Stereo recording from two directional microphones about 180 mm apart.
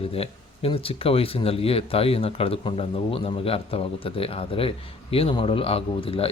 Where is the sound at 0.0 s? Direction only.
30° left (ahead or behind).